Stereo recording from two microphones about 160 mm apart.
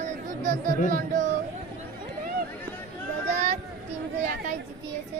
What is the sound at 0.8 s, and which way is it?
Speech, 50° right (ahead or behind).